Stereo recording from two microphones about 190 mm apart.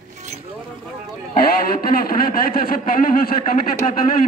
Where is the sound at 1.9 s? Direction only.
50° left (ahead or behind).